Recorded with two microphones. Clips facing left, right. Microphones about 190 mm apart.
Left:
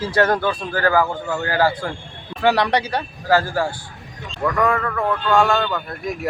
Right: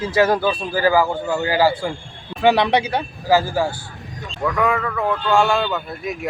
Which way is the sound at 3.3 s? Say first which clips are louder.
Right 1 dB; 5° right (ahead or behind).